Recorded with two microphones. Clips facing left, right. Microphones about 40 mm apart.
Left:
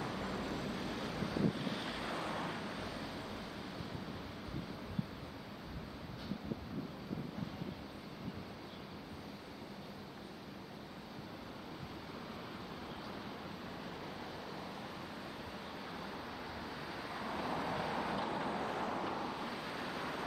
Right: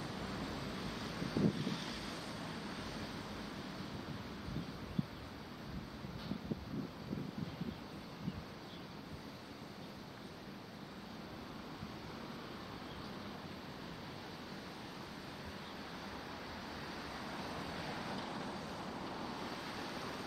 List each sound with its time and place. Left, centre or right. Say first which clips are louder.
0.0 s vehicle: left 3 dB; left
1.2 s vehicle: right 1 dB; centre; by 2.6 s left
2.7 s vehicle: left 2 dB; centre
17.1 s vehicle: left 9 dB; centre